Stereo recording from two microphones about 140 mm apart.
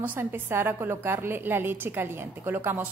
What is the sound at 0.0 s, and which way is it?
A woman's voice, 15° right (ahead or behind).